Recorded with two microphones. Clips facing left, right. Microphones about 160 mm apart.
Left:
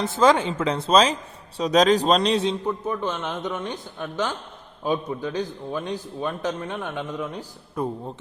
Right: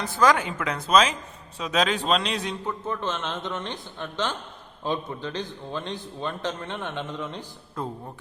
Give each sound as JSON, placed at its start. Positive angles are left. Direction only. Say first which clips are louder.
{"t": 0.0, "sound": "a man's voice", "louder": "left 3 dB", "side_deg": 25}
{"t": 2.6, "sound": "a man's voice", "louder": "left 3 dB", "side_deg": 10}